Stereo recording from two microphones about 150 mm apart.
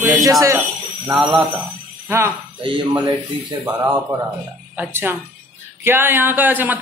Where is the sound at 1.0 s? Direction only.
5° right (ahead or behind).